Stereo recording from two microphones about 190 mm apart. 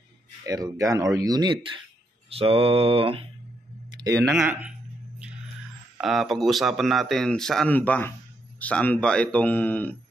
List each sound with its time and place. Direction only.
0.5 s speech: 15° right (ahead or behind)
2.3 s mantra: 30° right (ahead or behind)
4.0 s speech: 15° right (ahead or behind)
4.4 s speech: 5° right (ahead or behind)
5.9 s speech: centre (ahead or behind)